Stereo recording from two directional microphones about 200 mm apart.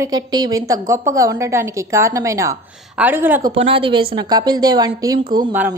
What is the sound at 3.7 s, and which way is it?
A woman's voice, 25° right (ahead or behind).